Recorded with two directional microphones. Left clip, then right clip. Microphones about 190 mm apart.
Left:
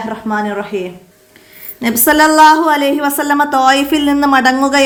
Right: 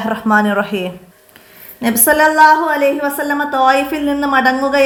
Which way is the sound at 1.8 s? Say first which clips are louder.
Left 1 dB; 20° left (ahead or behind).